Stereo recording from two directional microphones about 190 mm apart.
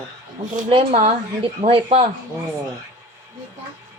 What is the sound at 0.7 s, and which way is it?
Speech, 30° right (ahead or behind).